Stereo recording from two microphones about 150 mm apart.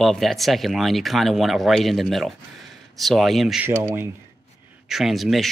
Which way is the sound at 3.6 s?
15° right (ahead or behind).